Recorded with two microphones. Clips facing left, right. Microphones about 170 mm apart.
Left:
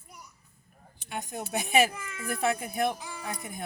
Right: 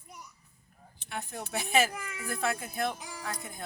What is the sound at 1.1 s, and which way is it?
A man's voice, 15° left (ahead or behind).